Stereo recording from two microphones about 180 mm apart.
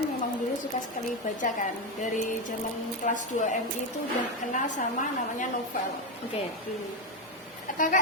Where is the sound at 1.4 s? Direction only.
45° left (ahead or behind).